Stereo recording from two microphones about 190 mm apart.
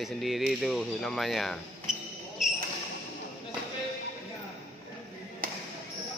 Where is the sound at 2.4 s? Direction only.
Centre (ahead or behind).